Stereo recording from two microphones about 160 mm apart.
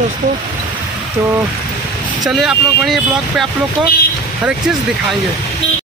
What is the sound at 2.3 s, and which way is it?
Speech, centre (ahead or behind).